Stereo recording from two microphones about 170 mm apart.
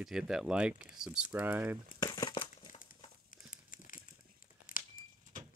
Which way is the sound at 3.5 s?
55° left (ahead or behind).